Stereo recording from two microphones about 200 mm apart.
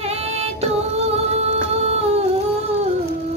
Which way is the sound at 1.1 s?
35° right (ahead or behind).